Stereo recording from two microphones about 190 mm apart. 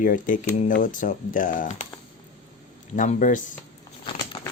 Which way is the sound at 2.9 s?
45° left (ahead or behind).